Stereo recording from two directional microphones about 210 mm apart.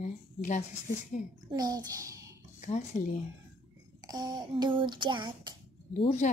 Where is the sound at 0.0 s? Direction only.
35° left (ahead or behind).